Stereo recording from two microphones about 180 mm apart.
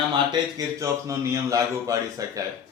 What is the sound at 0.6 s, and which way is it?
A man's voice, 15° right (ahead or behind).